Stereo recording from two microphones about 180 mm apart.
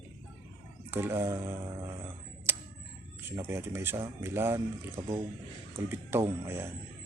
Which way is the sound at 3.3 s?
15° right (ahead or behind).